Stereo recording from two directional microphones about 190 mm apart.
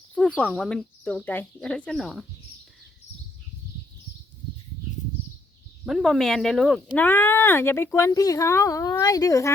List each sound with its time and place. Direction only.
0.3 s speech: 5° left (ahead or behind)
5.8 s speech: centre (ahead or behind); by 9.5 s 15° left (ahead or behind)